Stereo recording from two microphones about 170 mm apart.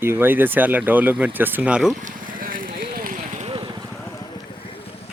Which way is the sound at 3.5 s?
25° right (ahead or behind).